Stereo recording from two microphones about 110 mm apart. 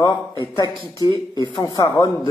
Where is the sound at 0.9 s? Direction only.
35° left (ahead or behind).